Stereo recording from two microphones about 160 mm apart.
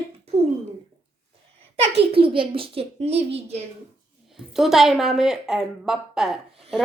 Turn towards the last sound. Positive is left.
turn(degrees=-5)  # may be behind; listen again after turning